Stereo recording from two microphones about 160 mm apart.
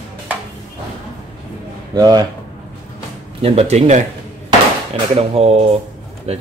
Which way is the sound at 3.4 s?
40° right (ahead or behind).